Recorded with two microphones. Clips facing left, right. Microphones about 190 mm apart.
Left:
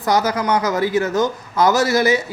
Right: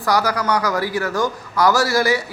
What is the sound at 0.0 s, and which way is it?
A man's voice, 20° left (ahead or behind).